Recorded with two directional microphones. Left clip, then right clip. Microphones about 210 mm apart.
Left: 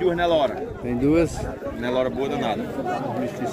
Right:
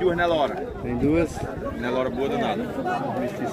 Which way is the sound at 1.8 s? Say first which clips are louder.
Left 2 dB; 50° left (ahead or behind).